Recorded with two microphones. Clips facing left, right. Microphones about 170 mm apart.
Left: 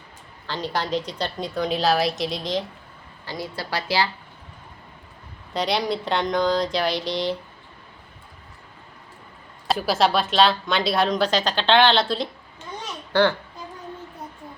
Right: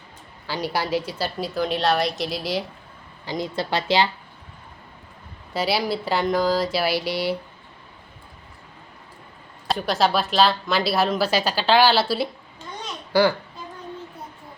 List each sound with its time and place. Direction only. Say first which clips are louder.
0.4 s a woman's voice: right 1 dB; 10° right (ahead or behind)
3.2 s a woman's voice: right 5 dB; 20° right (ahead or behind)
5.5 s a woman's voice: even; 5° right (ahead or behind)
9.6 s a woman's voice: left 1 dB; centre (ahead or behind)